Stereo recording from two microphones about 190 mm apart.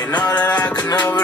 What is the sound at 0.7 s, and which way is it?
Music, 20° left (ahead or behind).